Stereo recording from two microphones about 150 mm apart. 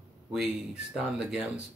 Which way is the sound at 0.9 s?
5° right (ahead or behind).